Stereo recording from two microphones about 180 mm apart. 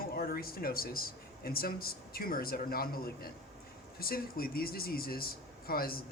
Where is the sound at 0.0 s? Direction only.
55° left (ahead or behind).